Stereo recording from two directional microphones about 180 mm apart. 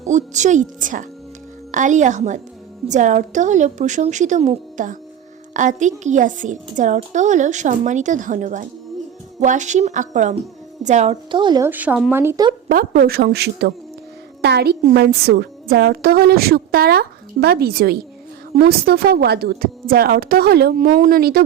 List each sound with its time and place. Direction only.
0.1 s a woman's voice: 40° right (ahead or behind); by 11.6 s 25° right (ahead or behind)
11.6 s speech: 10° right (ahead or behind)
12.6 s a woman's voice: 50° right (ahead or behind)